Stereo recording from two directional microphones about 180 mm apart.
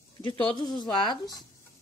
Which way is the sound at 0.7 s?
25° left (ahead or behind).